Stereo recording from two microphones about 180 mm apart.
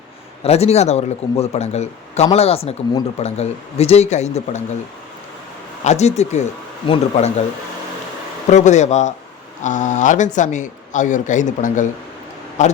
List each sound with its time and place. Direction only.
0.4 s speech: 35° left (ahead or behind)
5.8 s speech: 40° left (ahead or behind)
8.4 s speech: 40° left (ahead or behind)